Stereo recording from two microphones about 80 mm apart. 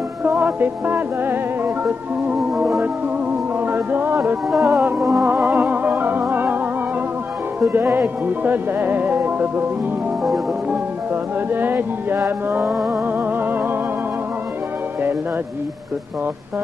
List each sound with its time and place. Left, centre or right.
0.2 s music: right
2.5 s music: centre
3.7 s music: right
4.5 s music: centre
5.2 s music: right
7.7 s music: right
11.5 s music: right